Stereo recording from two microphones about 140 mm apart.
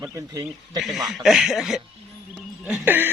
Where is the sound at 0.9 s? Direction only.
Centre (ahead or behind).